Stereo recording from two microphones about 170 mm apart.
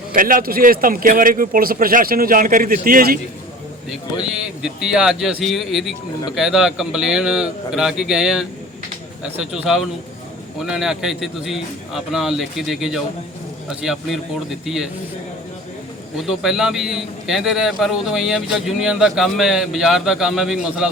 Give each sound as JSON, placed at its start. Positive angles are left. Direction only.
{"t": 0.1, "sound": "a man's voice", "side_deg": -55}
{"t": 3.8, "sound": "a man's voice", "side_deg": -5}
{"t": 9.7, "sound": "a man's voice", "side_deg": 0}
{"t": 16.2, "sound": "a man's voice", "side_deg": -5}